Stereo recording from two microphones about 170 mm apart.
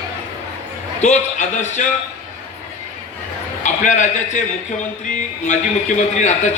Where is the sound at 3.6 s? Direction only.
45° left (ahead or behind).